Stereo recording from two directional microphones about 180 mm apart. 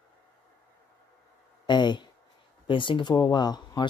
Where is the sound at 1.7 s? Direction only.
25° left (ahead or behind).